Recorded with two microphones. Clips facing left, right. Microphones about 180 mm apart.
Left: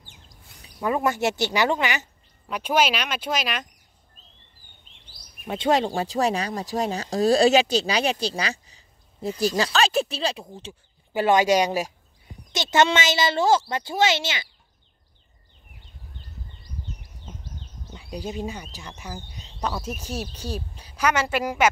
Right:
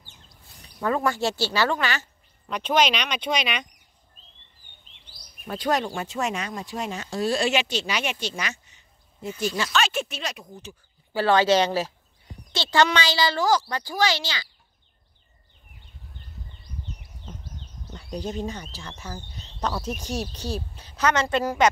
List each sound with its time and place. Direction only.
0.7 s speech: 15° left (ahead or behind)
2.5 s speech: 10° left (ahead or behind)
5.5 s speech: 25° left (ahead or behind)
17.9 s speech: 5° left (ahead or behind)